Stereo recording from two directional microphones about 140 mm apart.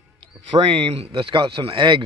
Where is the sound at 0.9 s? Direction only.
40° right (ahead or behind).